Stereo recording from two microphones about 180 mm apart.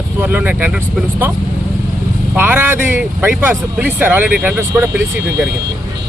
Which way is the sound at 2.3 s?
10° right (ahead or behind).